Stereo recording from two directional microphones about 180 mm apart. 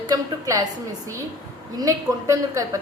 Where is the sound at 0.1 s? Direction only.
20° right (ahead or behind).